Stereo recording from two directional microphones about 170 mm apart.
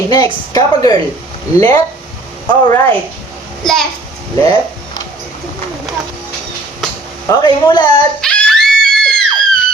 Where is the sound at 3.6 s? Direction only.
Centre (ahead or behind).